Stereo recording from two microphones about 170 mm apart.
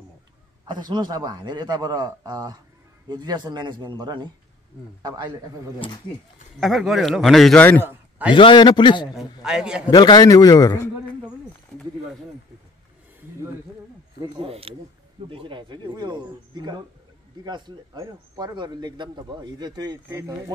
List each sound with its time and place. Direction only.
0.7 s a man's voice: 25° right (ahead or behind)
6.6 s a man's voice: centre (ahead or behind)
7.8 s a sound: 10° right (ahead or behind)
8.4 s a man's voice: 30° left (ahead or behind)
9.0 s a man's voice: 5° right (ahead or behind)
9.8 s a man's voice: 25° left (ahead or behind)
14.2 s a man's voice: 35° right (ahead or behind); by 20.5 s 15° right (ahead or behind)